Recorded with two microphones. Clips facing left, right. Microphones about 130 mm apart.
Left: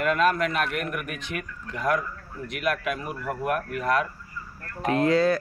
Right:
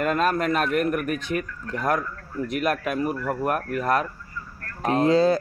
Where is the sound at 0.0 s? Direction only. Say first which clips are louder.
Even; 40° right (ahead or behind).